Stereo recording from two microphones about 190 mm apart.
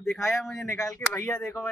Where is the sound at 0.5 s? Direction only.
15° left (ahead or behind).